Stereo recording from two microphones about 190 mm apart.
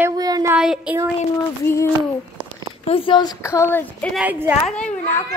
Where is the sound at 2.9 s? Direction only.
25° left (ahead or behind); by 4.1 s 10° left (ahead or behind).